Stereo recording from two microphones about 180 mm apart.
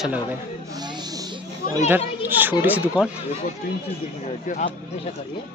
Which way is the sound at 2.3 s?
10° right (ahead or behind).